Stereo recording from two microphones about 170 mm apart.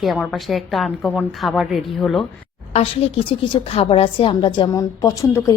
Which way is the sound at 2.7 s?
35° left (ahead or behind).